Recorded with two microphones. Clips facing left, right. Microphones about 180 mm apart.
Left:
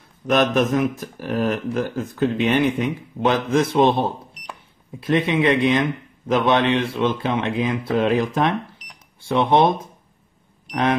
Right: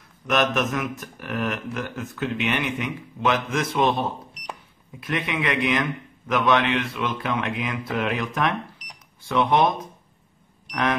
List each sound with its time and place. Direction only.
0.3 s a man's voice: 30° left (ahead or behind)